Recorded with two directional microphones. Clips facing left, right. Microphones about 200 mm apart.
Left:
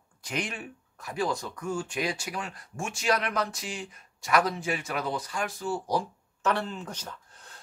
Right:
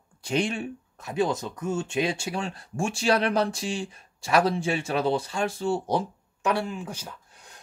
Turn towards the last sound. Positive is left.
turn(degrees=-10)  # may be behind; listen again after turning